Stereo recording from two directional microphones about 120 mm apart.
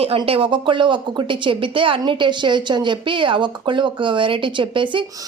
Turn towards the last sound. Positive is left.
turn(degrees=-45)  # may be behind; listen again after turning